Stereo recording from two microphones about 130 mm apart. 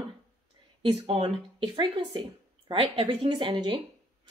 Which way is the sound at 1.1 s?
45° right (ahead or behind).